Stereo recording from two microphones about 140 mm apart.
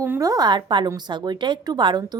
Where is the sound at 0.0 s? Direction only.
20° right (ahead or behind).